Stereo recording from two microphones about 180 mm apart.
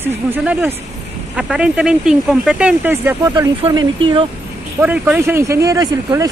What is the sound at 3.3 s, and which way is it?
Speech, 25° right (ahead or behind).